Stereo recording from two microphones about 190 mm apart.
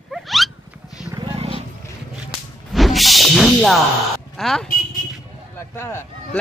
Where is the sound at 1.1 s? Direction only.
25° right (ahead or behind).